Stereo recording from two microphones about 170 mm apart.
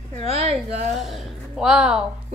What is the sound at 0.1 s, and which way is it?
Speech, 40° right (ahead or behind).